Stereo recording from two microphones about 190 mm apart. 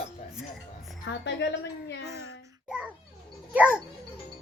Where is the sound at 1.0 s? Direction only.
65° left (ahead or behind).